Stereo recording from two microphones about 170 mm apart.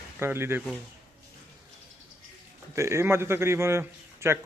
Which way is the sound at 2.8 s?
15° right (ahead or behind).